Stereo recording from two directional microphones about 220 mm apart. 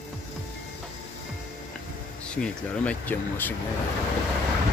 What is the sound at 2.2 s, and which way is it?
Speech, 5° left (ahead or behind).